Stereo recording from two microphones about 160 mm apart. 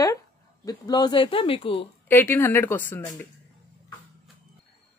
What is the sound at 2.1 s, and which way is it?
Speech, 15° left (ahead or behind).